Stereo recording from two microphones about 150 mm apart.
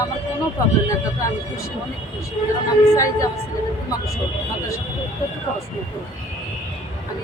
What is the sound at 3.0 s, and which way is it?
Speech, 20° left (ahead or behind).